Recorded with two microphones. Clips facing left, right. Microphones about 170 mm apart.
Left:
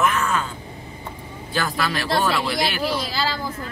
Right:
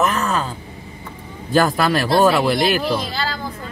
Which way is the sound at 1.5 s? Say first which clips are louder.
Right 8 dB; 45° right (ahead or behind).